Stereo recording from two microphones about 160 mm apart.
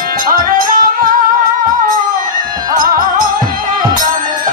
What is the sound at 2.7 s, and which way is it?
Music, 60° right (ahead or behind).